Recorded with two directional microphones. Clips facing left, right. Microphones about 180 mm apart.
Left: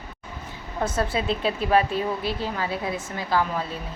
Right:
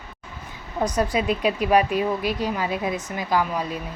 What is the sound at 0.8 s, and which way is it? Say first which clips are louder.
Speech: right 3 dB; 15° right (ahead or behind).